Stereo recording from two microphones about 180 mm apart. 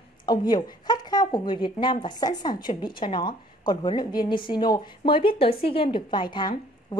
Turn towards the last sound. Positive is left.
turn(degrees=25)  # may be behind; listen again after turning